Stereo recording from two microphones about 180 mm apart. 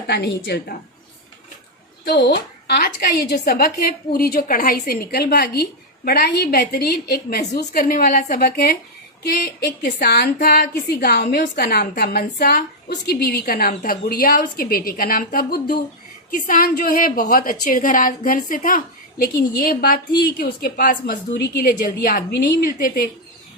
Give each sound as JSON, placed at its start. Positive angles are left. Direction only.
{"t": 0.1, "sound": "speech", "side_deg": 65}
{"t": 2.0, "sound": "a woman's voice", "side_deg": 65}